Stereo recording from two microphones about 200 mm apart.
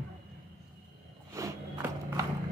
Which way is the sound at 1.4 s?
15° right (ahead or behind).